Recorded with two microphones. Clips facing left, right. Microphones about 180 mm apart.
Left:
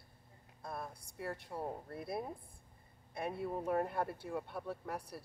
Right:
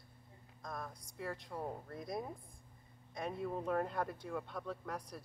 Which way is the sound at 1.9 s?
5° left (ahead or behind).